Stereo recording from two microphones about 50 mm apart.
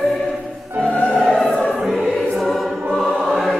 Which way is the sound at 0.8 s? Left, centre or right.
Left.